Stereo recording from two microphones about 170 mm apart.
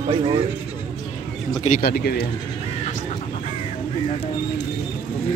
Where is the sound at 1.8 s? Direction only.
65° left (ahead or behind).